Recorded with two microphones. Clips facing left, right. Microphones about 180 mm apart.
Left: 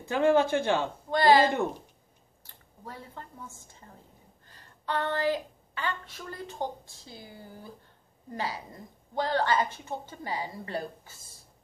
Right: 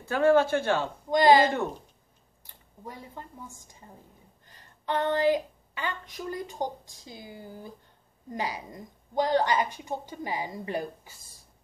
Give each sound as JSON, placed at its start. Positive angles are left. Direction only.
{"t": 0.1, "sound": "speech", "side_deg": 15}
{"t": 1.1, "sound": "a woman's voice", "side_deg": -15}